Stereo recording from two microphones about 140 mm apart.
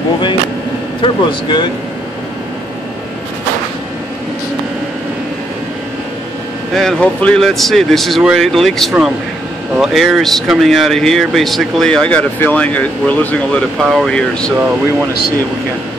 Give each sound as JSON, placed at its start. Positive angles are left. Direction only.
{"t": 1.0, "sound": "speech", "side_deg": 30}
{"t": 6.7, "sound": "speech", "side_deg": 5}
{"t": 13.7, "sound": "speech", "side_deg": 0}